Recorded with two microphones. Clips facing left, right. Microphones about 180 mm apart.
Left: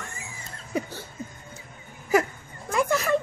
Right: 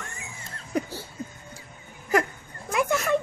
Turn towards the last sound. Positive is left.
turn(degrees=0)  # may be behind; listen again after turning